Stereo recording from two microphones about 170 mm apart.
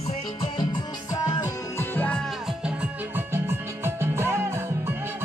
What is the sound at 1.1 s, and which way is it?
Music, 20° left (ahead or behind).